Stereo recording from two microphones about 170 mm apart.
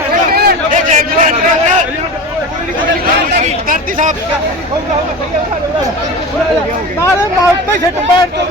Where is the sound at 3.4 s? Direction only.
50° right (ahead or behind).